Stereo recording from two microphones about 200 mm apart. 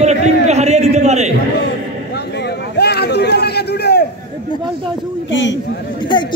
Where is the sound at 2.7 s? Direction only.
55° left (ahead or behind).